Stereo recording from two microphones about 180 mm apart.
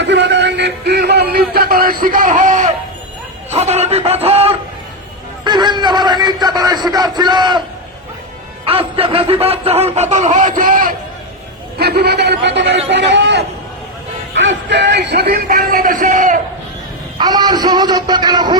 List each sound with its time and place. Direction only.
0.0 s music: 75° right (ahead or behind); by 2.7 s 45° right (ahead or behind)
3.5 s a man's voice: 35° right (ahead or behind)
8.6 s speech: 30° right (ahead or behind); by 10.9 s 50° right (ahead or behind)
11.8 s a man's voice: 65° right (ahead or behind); by 16.4 s 45° right (ahead or behind)
17.2 s speech: 20° right (ahead or behind)